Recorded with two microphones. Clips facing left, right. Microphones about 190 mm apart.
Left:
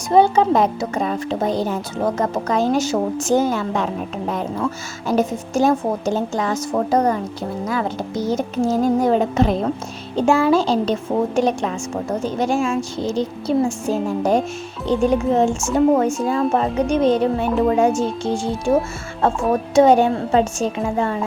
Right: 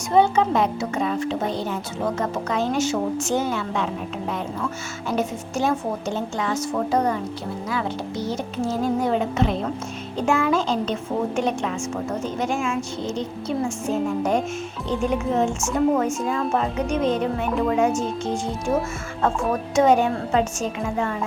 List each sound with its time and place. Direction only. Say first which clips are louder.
0.1 s speech: left 4 dB; 35° left (ahead or behind)
5.0 s speech: left 6 dB; 40° left (ahead or behind)
19.7 s speech: left 5 dB; 30° left (ahead or behind)